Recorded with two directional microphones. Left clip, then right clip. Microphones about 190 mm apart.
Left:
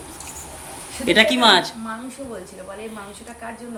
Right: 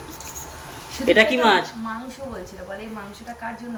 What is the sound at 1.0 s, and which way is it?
Speech, 40° left (ahead or behind).